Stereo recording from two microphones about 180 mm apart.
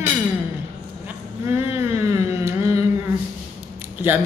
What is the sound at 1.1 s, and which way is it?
Speech, 10° right (ahead or behind).